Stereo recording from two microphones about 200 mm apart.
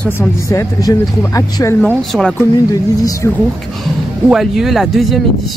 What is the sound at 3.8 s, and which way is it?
Speech, centre (ahead or behind).